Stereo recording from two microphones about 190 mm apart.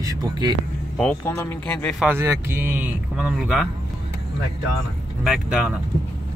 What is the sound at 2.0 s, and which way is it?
A man's voice, 10° right (ahead or behind).